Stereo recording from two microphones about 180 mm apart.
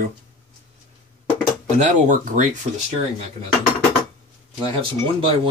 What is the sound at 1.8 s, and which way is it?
Speech, 45° right (ahead or behind).